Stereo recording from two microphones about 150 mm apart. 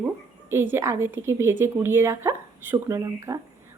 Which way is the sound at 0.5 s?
15° right (ahead or behind).